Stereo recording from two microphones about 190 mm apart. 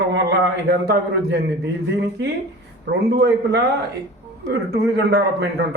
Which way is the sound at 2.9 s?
60° right (ahead or behind).